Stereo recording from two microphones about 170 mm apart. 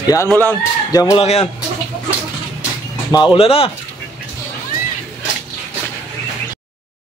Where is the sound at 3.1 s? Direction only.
30° left (ahead or behind).